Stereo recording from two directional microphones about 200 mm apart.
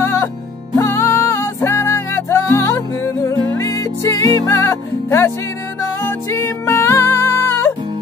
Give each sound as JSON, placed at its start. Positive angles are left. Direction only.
{"t": 0.0, "sound": "music", "side_deg": 15}
{"t": 6.3, "sound": "music", "side_deg": 15}